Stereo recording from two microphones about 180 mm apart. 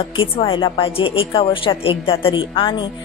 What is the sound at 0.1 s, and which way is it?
Speech, 25° left (ahead or behind).